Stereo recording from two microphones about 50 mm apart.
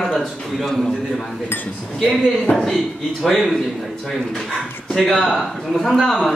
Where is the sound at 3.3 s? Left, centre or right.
Centre.